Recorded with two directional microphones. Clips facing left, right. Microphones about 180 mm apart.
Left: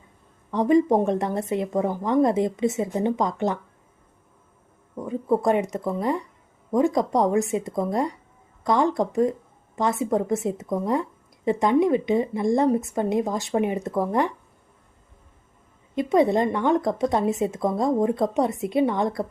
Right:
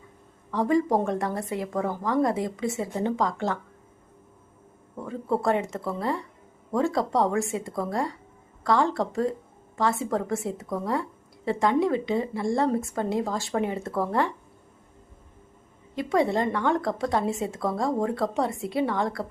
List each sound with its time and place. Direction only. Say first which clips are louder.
0.5 s a woman's voice: left 4 dB; 20° left (ahead or behind)
4.9 s a woman's voice: left 4 dB; 15° left (ahead or behind)
16.0 s a woman's voice: left 4 dB; 20° left (ahead or behind)